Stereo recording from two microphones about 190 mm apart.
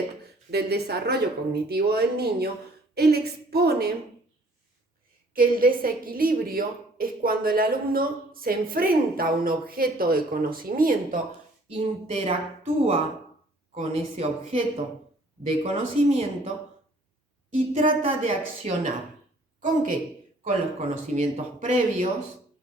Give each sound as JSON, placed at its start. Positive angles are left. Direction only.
{"t": 0.5, "sound": "speech", "side_deg": -60}
{"t": 5.3, "sound": "a woman's voice", "side_deg": -50}
{"t": 11.7, "sound": "speech", "side_deg": -35}
{"t": 17.7, "sound": "speech", "side_deg": -35}
{"t": 19.6, "sound": "a woman's voice", "side_deg": -45}